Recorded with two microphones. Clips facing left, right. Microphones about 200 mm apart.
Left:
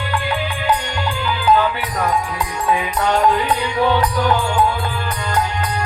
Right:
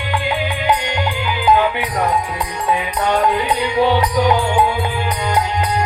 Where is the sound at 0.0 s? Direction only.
15° right (ahead or behind).